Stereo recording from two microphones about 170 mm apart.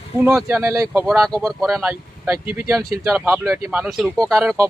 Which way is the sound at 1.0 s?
Centre (ahead or behind).